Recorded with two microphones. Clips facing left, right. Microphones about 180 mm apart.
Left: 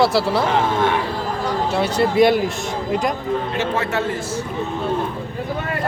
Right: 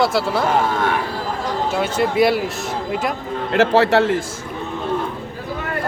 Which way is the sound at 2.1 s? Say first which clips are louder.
Left 3 dB; 5° right (ahead or behind).